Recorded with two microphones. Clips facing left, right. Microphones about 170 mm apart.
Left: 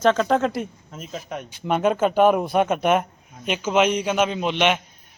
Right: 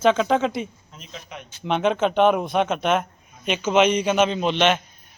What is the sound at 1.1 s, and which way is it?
Speech, 45° left (ahead or behind).